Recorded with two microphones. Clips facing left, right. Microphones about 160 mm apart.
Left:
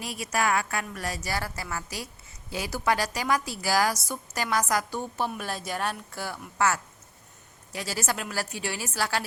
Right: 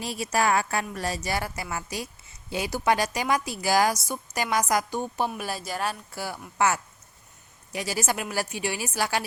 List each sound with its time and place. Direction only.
0.0 s a woman's voice: 30° right (ahead or behind)
5.3 s a woman's voice: 5° right (ahead or behind)